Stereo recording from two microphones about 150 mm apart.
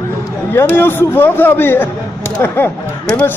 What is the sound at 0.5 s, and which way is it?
A man's voice, 15° left (ahead or behind).